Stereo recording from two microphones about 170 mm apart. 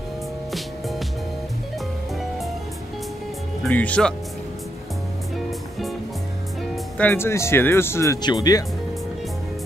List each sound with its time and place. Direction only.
0.5 s music: centre (ahead or behind)
3.6 s speech: 5° left (ahead or behind)
6.6 s music: centre (ahead or behind)
7.1 s speech: 15° left (ahead or behind)